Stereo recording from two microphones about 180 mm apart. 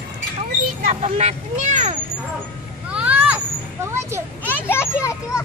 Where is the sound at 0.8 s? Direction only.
40° right (ahead or behind).